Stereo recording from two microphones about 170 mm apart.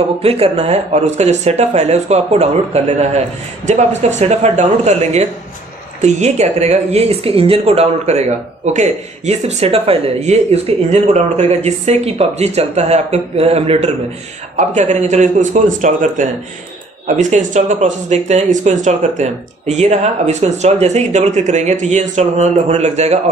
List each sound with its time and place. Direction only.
0.2 s speech: 35° right (ahead or behind)
4.2 s a man's voice: 40° right (ahead or behind)